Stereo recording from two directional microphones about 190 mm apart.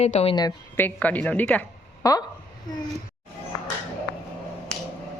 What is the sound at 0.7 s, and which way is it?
A woman's voice, 10° left (ahead or behind).